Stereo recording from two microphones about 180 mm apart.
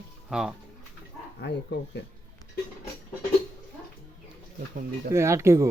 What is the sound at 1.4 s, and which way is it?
Speech, 70° left (ahead or behind).